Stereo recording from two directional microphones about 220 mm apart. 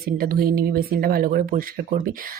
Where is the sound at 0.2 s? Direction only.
40° right (ahead or behind).